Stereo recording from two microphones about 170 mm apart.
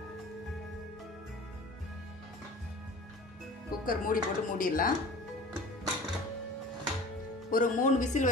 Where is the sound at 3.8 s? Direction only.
55° left (ahead or behind).